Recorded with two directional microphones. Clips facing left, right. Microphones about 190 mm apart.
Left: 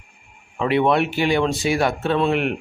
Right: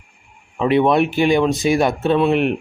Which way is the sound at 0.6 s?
20° right (ahead or behind).